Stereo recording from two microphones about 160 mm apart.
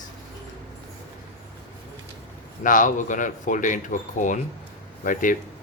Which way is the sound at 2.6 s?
55° left (ahead or behind).